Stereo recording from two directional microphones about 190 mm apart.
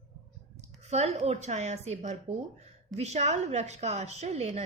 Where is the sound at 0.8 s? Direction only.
35° right (ahead or behind).